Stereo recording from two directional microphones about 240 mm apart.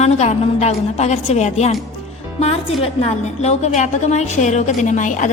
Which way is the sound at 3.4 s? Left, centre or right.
Left.